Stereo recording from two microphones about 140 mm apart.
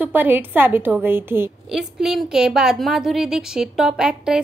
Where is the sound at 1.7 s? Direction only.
5° right (ahead or behind).